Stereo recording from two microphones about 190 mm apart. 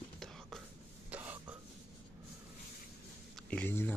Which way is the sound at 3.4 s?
5° left (ahead or behind).